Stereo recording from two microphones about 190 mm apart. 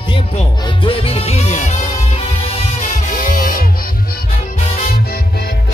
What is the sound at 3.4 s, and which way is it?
Music, 45° left (ahead or behind).